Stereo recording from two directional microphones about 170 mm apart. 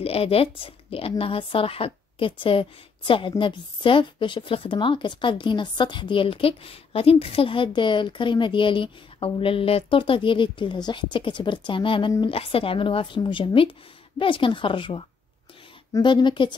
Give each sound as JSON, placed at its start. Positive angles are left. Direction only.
{"t": 0.0, "sound": "a woman's voice", "side_deg": 35}